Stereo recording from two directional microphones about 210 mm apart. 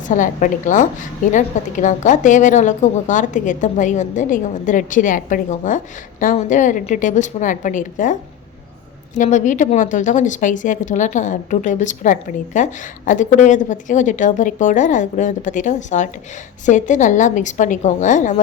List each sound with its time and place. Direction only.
0.1 s a woman's voice: 35° left (ahead or behind)
9.1 s a woman's voice: 35° left (ahead or behind)